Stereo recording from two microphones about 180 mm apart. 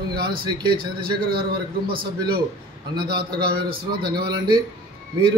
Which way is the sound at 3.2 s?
60° right (ahead or behind).